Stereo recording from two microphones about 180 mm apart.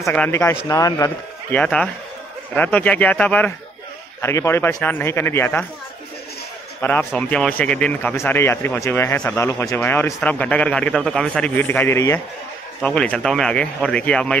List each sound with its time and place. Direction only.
0.0 s a man's voice: 10° left (ahead or behind)
1.6 s a man's voice: 5° left (ahead or behind)
6.8 s a man's voice: 10° left (ahead or behind)